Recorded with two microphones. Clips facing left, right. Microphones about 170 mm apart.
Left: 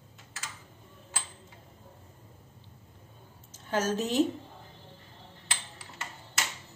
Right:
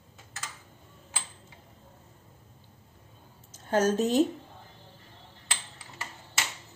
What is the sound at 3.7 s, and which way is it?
Speech, 40° right (ahead or behind).